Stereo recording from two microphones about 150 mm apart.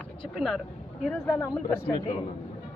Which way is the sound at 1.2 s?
20° left (ahead or behind).